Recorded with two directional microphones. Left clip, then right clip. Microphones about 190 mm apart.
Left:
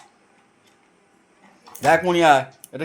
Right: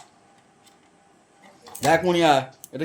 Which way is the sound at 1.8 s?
Centre (ahead or behind).